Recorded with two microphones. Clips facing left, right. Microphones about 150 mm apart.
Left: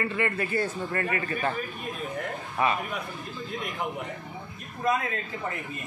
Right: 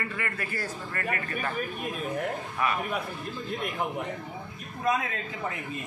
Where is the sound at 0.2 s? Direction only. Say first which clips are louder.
Left 7 dB; 25° left (ahead or behind).